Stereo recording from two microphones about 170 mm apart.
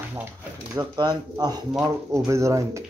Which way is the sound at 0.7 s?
25° right (ahead or behind).